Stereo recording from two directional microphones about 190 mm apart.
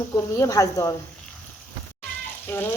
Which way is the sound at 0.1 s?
15° left (ahead or behind).